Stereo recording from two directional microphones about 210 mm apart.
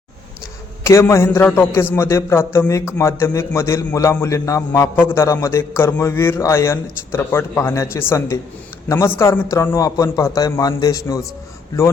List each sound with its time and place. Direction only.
0.9 s a man's voice: 10° left (ahead or behind)